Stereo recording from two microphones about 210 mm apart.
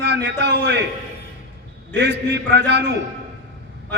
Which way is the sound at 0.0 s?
55° right (ahead or behind).